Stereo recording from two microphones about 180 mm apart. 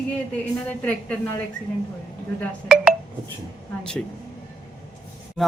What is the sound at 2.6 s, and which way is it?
Speech, 5° right (ahead or behind).